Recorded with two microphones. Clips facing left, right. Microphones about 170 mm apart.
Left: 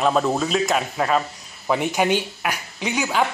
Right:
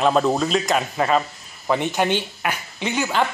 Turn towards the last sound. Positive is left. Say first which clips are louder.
# even
turn(degrees=0)  # may be behind; listen again after turning